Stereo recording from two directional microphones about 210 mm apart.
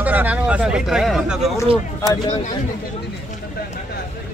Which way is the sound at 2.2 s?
35° left (ahead or behind).